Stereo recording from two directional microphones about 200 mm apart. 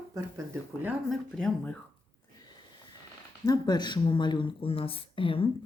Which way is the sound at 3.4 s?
20° left (ahead or behind).